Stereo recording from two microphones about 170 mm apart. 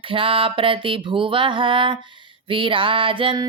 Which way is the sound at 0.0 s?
30° right (ahead or behind).